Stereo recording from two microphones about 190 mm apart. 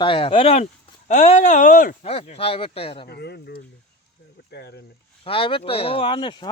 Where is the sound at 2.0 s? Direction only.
35° left (ahead or behind).